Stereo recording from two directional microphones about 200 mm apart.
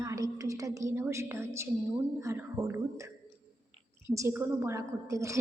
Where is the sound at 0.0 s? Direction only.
15° right (ahead or behind).